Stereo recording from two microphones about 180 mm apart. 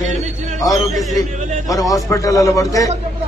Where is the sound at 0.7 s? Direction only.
Centre (ahead or behind).